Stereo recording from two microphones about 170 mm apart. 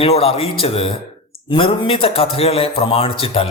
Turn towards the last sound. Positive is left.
turn(degrees=35)  # may be behind; listen again after turning